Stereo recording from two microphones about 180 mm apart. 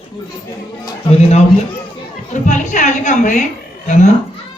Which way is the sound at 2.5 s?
45° left (ahead or behind).